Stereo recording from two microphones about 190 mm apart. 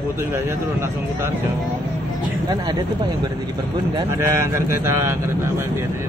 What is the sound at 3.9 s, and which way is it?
Speech, 15° right (ahead or behind).